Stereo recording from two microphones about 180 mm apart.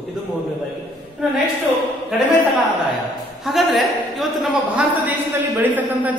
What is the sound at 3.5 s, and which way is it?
A man's voice, centre (ahead or behind).